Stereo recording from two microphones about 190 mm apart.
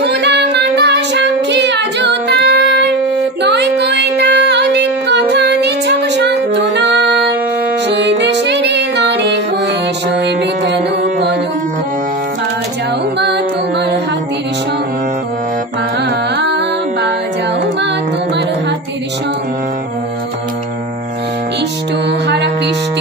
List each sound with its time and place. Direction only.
0.0 s child singing: 65° right (ahead or behind)
3.4 s music: 65° right (ahead or behind)